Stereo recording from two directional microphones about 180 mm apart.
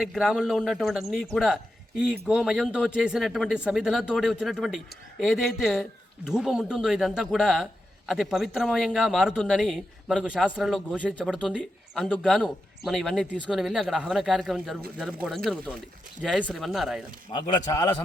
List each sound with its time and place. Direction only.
0.0 s speech: centre (ahead or behind)
17.3 s a man's voice: 20° left (ahead or behind)